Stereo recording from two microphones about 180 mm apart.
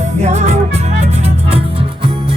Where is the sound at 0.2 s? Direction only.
40° right (ahead or behind).